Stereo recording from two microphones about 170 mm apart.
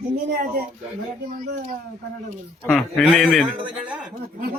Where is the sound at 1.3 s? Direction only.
55° right (ahead or behind).